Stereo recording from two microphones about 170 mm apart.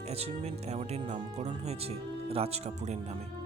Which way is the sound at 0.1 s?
40° right (ahead or behind).